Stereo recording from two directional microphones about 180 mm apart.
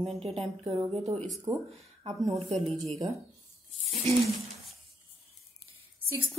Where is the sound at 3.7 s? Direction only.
35° right (ahead or behind).